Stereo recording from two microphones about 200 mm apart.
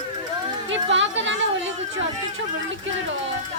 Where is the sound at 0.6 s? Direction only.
70° right (ahead or behind).